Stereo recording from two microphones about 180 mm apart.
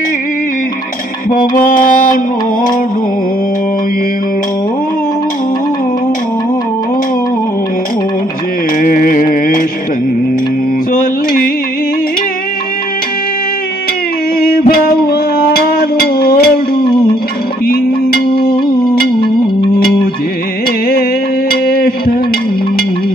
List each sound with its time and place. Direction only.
1.3 s music: 50° left (ahead or behind)
8.8 s music: 50° left (ahead or behind)
10.9 s music: 50° left (ahead or behind)
14.7 s a sound: 55° left (ahead or behind)
18.3 s music: 55° left (ahead or behind)
21.5 s music: 55° left (ahead or behind)